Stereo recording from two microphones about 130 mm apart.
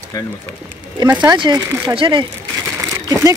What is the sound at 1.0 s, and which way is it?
Speech, 30° right (ahead or behind).